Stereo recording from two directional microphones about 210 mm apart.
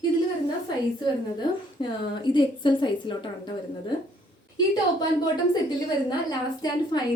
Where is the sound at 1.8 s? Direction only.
25° left (ahead or behind).